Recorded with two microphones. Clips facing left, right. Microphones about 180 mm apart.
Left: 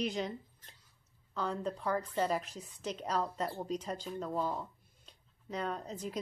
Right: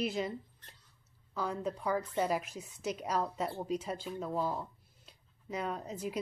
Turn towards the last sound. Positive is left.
turn(degrees=-10)  # may be behind; listen again after turning